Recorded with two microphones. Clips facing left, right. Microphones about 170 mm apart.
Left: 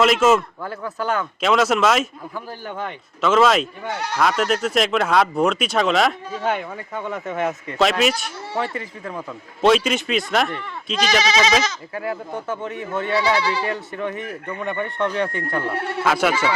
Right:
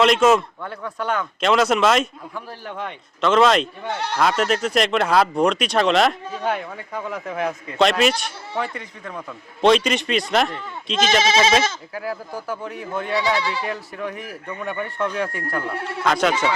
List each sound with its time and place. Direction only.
0.0 s speech: centre (ahead or behind)
11.2 s speech: 25° right (ahead or behind)
12.5 s speech: centre (ahead or behind)